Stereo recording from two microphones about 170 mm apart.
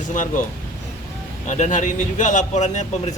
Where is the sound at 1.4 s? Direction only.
45° left (ahead or behind).